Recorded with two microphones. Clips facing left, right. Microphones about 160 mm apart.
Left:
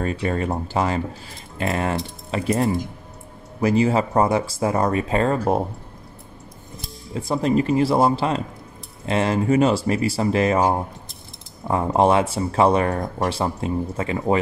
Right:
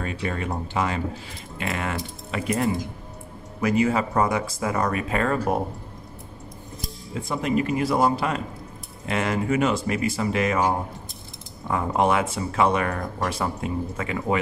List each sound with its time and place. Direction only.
0.0 s speech: 35° left (ahead or behind)
7.2 s speech: 35° left (ahead or behind)